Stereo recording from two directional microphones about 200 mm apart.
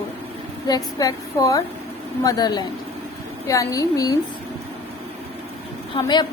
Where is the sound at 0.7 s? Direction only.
20° left (ahead or behind).